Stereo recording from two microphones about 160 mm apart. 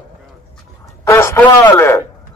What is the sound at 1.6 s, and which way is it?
Speech, 20° left (ahead or behind).